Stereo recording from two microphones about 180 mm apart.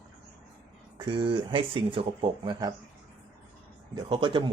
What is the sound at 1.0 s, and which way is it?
Speech, 25° right (ahead or behind).